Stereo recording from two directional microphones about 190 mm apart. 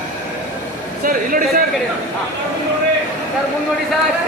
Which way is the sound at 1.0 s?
45° right (ahead or behind).